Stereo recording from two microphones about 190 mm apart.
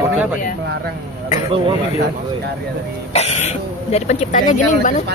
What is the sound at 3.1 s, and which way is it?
Speech, 35° left (ahead or behind).